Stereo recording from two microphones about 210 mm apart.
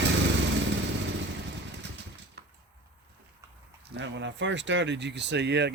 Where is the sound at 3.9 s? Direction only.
55° right (ahead or behind).